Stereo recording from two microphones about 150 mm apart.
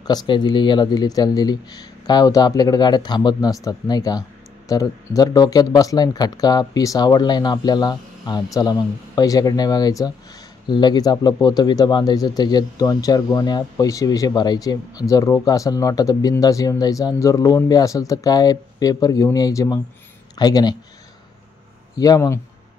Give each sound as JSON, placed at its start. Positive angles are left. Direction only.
{"t": 0.0, "sound": "speech", "side_deg": 30}
{"t": 21.9, "sound": "speech", "side_deg": 25}